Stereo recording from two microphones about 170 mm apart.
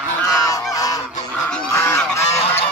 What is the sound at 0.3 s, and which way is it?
Goose, 20° left (ahead or behind).